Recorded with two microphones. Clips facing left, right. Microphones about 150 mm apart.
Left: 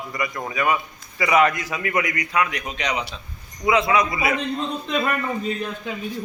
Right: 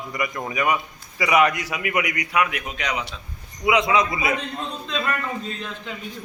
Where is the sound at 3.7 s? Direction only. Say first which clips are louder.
Even; 20° right (ahead or behind).